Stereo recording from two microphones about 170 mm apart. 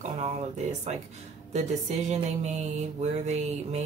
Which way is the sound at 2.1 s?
40° right (ahead or behind).